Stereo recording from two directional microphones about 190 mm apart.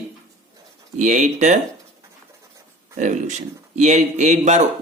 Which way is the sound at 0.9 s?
40° right (ahead or behind).